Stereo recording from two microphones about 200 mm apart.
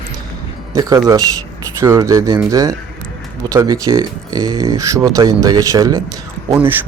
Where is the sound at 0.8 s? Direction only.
20° right (ahead or behind).